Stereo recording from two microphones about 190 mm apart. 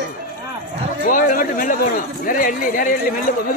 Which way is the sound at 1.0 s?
45° left (ahead or behind).